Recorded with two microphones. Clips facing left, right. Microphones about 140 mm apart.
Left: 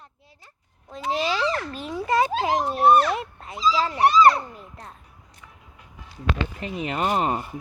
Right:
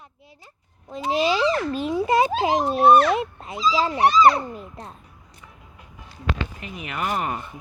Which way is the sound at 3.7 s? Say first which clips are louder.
Right 1 dB; 20° right (ahead or behind).